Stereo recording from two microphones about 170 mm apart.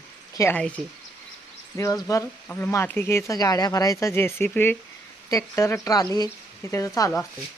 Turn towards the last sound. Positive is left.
turn(degrees=20)  # may be behind; listen again after turning